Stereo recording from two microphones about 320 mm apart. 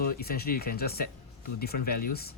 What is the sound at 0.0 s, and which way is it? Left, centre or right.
Speech, left.